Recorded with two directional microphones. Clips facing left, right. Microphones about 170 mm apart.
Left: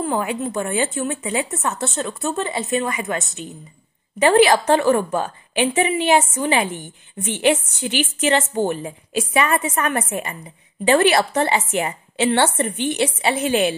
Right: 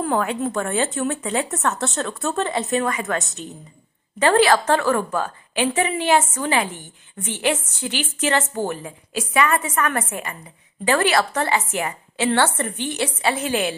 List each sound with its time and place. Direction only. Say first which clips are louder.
0.0 s a woman's voice: right 1 dB; 10° left (ahead or behind)